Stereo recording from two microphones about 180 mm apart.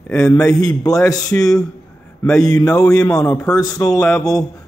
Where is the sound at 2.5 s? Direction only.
20° left (ahead or behind).